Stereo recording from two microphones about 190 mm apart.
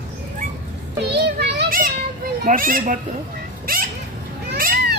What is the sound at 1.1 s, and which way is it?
Children playing, 60° right (ahead or behind).